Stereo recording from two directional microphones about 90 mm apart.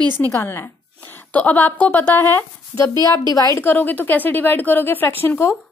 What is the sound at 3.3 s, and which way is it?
Speech, 40° left (ahead or behind).